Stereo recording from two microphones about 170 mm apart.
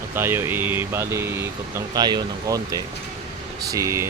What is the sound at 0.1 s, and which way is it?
Speech, 15° right (ahead or behind).